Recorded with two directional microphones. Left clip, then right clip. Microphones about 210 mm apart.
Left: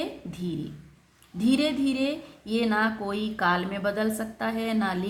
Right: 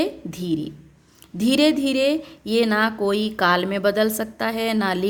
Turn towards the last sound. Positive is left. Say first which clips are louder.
# right 7 dB
turn(degrees=-45)  # may be behind; listen again after turning